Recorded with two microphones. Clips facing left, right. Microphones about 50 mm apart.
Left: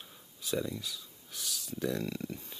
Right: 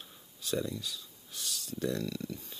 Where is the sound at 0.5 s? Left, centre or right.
Centre.